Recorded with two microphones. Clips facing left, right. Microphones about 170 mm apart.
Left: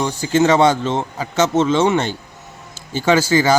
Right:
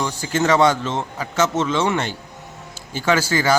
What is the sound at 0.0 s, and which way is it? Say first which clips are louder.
A man's voice: left 5 dB; 25° left (ahead or behind).